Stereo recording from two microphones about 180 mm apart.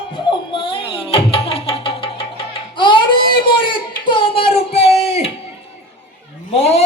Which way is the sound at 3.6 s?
25° left (ahead or behind).